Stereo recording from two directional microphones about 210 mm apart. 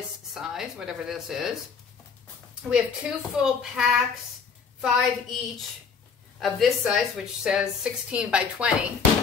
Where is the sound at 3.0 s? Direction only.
5° right (ahead or behind).